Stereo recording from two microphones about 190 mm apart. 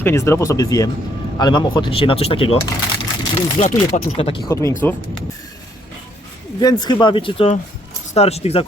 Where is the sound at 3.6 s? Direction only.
35° left (ahead or behind).